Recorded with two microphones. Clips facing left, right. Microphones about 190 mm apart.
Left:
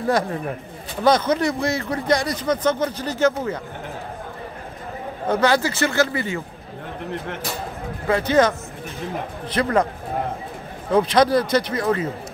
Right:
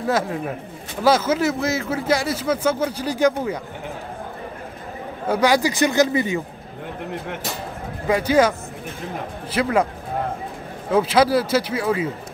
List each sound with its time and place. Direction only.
0.0 s speech: centre (ahead or behind)
5.3 s speech: 10° right (ahead or behind)
8.1 s speech: 10° right (ahead or behind)
10.9 s speech: 5° right (ahead or behind)